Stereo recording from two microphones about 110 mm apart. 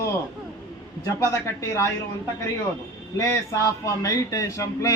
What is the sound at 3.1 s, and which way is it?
A man's voice, 30° left (ahead or behind).